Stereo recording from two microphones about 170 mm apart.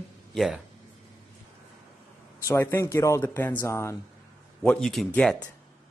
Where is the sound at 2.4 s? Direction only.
15° left (ahead or behind).